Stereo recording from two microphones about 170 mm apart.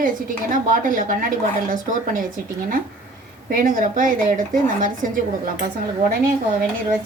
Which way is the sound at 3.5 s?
55° right (ahead or behind).